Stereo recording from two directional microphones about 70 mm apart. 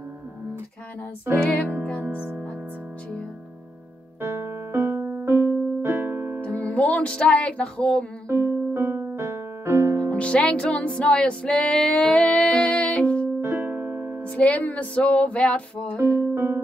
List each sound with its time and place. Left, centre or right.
2.0 s music: right
4.2 s music: right
6.4 s music: left
8.3 s music: right
10.1 s music: centre
13.4 s keyboard: right
14.2 s music: centre
16.0 s music: right